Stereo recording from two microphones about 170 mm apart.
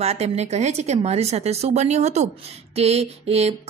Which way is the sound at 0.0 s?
40° right (ahead or behind).